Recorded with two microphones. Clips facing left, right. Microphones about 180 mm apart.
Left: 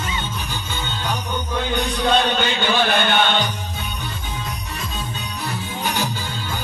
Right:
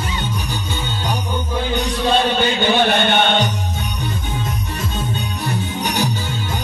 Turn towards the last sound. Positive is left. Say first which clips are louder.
# right 3 dB
turn(degrees=-15)  # may be behind; listen again after turning